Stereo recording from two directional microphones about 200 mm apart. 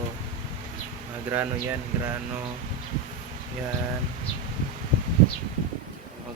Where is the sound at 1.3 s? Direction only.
10° right (ahead or behind).